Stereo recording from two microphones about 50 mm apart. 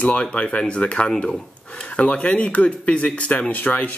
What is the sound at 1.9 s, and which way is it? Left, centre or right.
Speech, left.